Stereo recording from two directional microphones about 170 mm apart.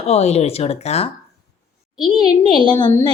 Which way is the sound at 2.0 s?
25° left (ahead or behind).